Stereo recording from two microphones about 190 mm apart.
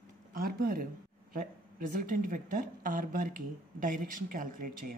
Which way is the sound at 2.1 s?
45° right (ahead or behind).